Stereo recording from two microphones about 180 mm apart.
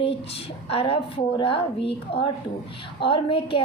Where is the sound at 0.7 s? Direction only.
30° left (ahead or behind).